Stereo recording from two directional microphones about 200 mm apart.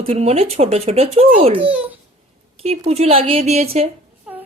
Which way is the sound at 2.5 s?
30° right (ahead or behind).